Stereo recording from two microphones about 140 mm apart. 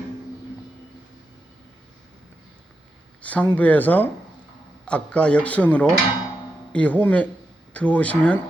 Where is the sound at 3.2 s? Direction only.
10° left (ahead or behind).